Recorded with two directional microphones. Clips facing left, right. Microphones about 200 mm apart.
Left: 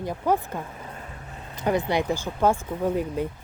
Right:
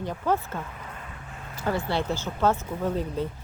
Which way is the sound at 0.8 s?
30° left (ahead or behind).